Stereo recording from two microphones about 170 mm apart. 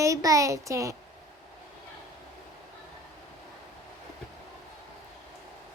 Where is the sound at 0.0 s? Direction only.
20° right (ahead or behind).